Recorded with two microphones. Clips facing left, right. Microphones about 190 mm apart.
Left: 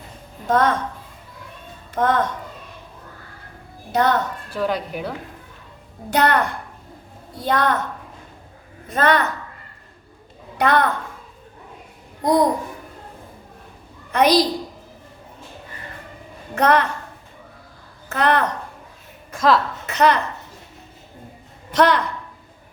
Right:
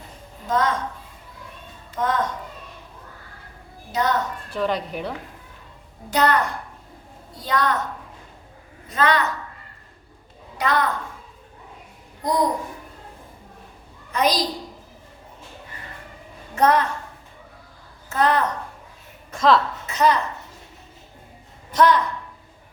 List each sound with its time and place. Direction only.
0.4 s a woman's voice: 60° left (ahead or behind)
2.0 s a woman's voice: 60° left (ahead or behind)
3.9 s a woman's voice: 60° left (ahead or behind)
4.5 s speech: 5° left (ahead or behind)
6.1 s a woman's voice: 60° left (ahead or behind)
8.9 s a woman's voice: 55° left (ahead or behind)
10.6 s a woman's voice: 60° left (ahead or behind)
12.2 s a woman's voice: 60° left (ahead or behind)
14.1 s a woman's voice: 65° left (ahead or behind)
16.6 s a woman's voice: 70° left (ahead or behind)
18.1 s a woman's voice: 70° left (ahead or behind)
19.3 s a woman's voice: centre (ahead or behind)
19.9 s a woman's voice: 70° left (ahead or behind)
21.7 s a woman's voice: 70° left (ahead or behind)